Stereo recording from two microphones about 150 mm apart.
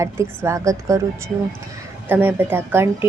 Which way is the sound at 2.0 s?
15° right (ahead or behind).